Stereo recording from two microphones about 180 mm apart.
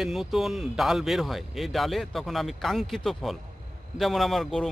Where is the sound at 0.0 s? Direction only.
Centre (ahead or behind).